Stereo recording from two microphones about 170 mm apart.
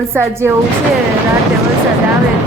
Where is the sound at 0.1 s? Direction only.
15° right (ahead or behind).